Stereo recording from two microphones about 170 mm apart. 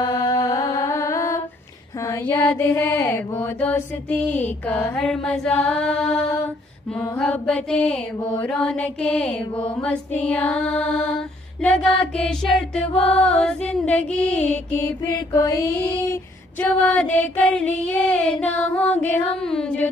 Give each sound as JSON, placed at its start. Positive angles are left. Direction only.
{"t": 0.0, "sound": "music", "side_deg": 25}
{"t": 2.0, "sound": "mantra", "side_deg": 15}
{"t": 11.6, "sound": "music", "side_deg": 5}
{"t": 15.0, "sound": "mantra", "side_deg": 20}